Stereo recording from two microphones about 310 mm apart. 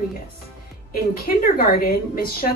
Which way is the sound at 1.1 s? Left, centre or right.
Left.